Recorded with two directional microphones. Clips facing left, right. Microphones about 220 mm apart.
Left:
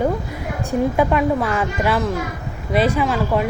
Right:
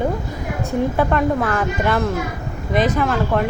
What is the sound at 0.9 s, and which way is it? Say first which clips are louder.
A woman's voice: even; 10° left (ahead or behind).